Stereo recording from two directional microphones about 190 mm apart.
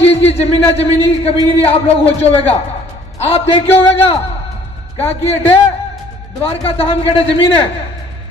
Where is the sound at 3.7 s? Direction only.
10° left (ahead or behind).